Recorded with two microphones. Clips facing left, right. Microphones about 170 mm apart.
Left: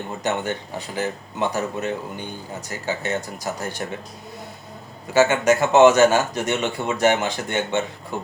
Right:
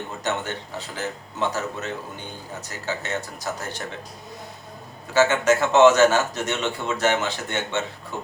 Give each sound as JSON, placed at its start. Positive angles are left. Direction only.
{"t": 0.2, "sound": "a man's voice", "side_deg": 10}
{"t": 5.1, "sound": "a man's voice", "side_deg": 15}
{"t": 8.1, "sound": "speech", "side_deg": 50}